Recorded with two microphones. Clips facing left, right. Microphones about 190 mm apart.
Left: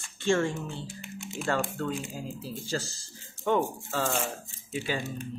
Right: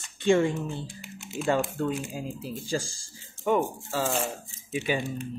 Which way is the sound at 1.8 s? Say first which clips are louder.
Right 3 dB; 15° right (ahead or behind).